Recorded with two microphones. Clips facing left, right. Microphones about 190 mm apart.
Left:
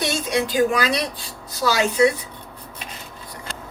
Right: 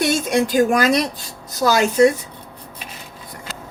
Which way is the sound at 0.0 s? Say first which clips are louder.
Right 5 dB; 50° right (ahead or behind).